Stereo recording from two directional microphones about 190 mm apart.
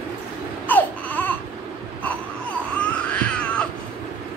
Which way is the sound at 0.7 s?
10° left (ahead or behind).